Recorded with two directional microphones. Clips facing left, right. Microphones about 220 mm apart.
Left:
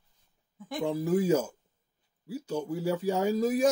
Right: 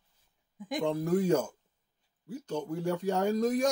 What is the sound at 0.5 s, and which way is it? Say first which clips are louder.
Speech: right 1 dB; 15° right (ahead or behind).